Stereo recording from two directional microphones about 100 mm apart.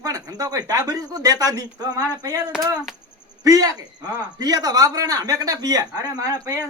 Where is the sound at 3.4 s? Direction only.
35° right (ahead or behind).